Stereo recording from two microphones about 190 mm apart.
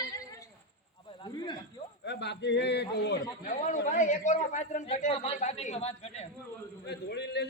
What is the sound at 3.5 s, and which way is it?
A man's voice, 40° left (ahead or behind).